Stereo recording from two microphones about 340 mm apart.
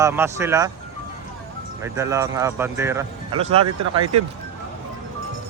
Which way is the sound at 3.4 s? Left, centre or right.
Centre.